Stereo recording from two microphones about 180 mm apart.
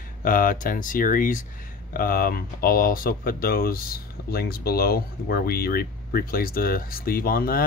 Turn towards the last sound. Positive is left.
turn(degrees=55)  # may be behind; listen again after turning